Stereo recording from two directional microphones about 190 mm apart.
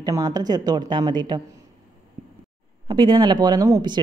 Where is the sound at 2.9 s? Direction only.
25° right (ahead or behind).